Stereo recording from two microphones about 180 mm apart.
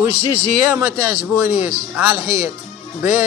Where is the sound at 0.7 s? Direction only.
10° right (ahead or behind).